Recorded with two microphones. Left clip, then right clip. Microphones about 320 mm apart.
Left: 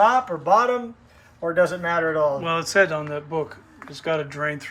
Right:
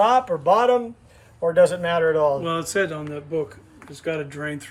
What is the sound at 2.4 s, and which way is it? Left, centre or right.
Speech, centre.